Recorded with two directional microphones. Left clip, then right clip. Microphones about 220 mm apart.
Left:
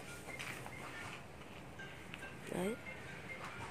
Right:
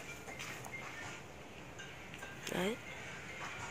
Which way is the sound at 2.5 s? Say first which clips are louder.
Right 3 dB; centre (ahead or behind).